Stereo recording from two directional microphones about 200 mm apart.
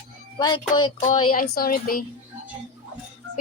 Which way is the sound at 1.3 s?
45° left (ahead or behind).